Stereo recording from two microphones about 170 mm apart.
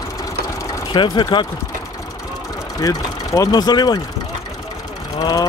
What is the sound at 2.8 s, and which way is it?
Speech, 20° left (ahead or behind).